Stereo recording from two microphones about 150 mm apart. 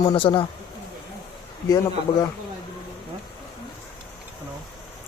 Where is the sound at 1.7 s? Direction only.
25° left (ahead or behind).